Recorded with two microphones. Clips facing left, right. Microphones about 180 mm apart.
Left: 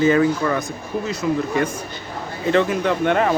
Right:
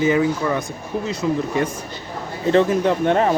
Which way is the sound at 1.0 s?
30° right (ahead or behind).